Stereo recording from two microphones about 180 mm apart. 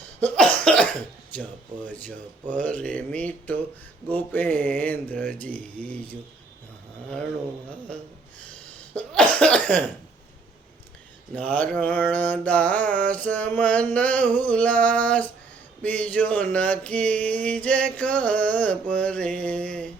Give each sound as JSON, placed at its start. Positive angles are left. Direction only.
{"t": 0.2, "sound": "cough", "side_deg": 5}
{"t": 1.4, "sound": "mantra", "side_deg": 10}
{"t": 9.0, "sound": "mantra", "side_deg": 5}
{"t": 11.3, "sound": "mantra", "side_deg": 10}